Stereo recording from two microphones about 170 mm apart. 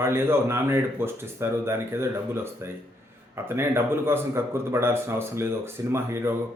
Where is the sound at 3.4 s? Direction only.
15° right (ahead or behind).